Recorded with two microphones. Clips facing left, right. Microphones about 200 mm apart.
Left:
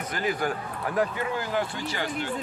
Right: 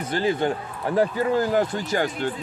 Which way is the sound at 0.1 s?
30° right (ahead or behind).